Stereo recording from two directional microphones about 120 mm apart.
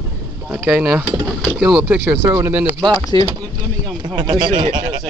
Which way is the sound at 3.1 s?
35° left (ahead or behind).